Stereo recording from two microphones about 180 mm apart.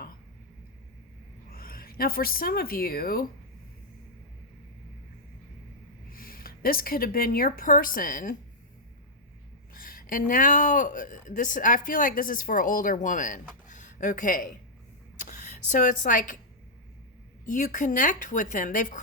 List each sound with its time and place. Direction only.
1.5 s speech: 55° left (ahead or behind)
6.1 s a woman's voice: 50° left (ahead or behind)
9.7 s speech: 50° left (ahead or behind)
13.7 s a sound: 45° left (ahead or behind)
15.2 s a woman's voice: 45° left (ahead or behind)
17.5 s speech: 45° left (ahead or behind)